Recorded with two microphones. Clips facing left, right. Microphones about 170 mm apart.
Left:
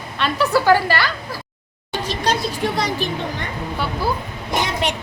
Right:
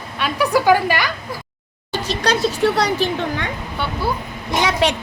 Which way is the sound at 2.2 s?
80° right.